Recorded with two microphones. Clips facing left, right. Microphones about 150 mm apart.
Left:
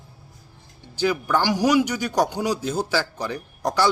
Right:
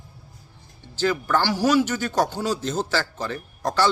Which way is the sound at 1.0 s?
10° left (ahead or behind).